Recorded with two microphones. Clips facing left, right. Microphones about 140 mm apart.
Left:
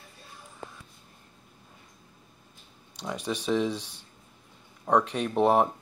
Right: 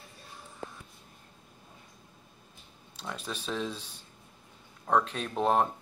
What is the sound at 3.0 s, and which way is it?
Speech, 15° left (ahead or behind).